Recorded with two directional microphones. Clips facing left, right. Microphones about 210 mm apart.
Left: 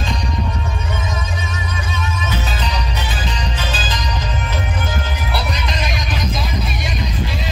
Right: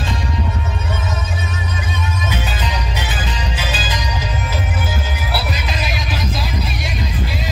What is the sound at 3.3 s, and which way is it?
Music, 10° right (ahead or behind).